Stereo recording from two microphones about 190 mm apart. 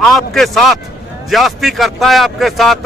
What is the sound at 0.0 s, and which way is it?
A man's voice, centre (ahead or behind).